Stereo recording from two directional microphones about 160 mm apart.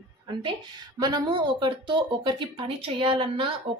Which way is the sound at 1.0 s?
25° right (ahead or behind).